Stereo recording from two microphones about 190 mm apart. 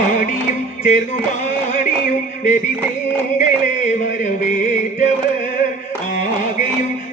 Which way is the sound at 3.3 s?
40° left (ahead or behind).